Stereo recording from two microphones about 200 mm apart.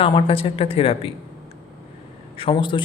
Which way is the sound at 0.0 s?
25° left (ahead or behind).